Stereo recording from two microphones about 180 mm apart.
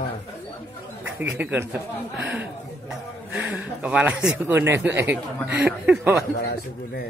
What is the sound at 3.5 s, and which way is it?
Speech, 10° right (ahead or behind).